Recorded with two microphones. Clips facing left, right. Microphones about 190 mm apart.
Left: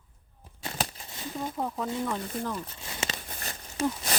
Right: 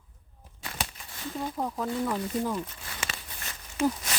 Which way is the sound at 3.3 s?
35° left (ahead or behind).